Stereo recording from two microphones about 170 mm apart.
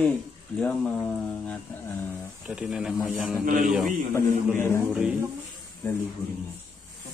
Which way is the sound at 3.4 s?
55° right (ahead or behind).